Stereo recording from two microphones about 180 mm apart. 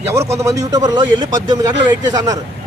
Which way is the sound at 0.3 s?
20° right (ahead or behind).